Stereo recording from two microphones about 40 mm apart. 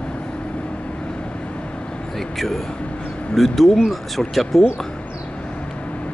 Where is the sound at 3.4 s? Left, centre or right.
Centre.